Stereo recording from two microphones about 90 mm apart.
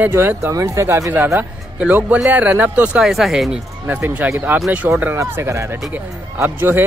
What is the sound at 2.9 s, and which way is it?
Speech, 5° right (ahead or behind).